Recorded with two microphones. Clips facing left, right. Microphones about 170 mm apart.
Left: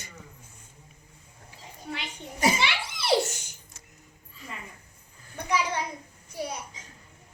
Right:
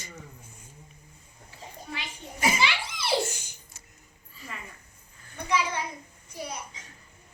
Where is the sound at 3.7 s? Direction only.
5° right (ahead or behind).